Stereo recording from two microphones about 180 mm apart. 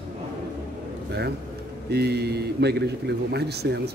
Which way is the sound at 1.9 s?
65° right (ahead or behind).